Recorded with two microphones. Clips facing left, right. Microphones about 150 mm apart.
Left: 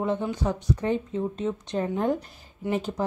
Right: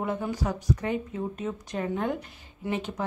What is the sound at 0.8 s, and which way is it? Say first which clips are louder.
Speech: left 3 dB; 30° left (ahead or behind).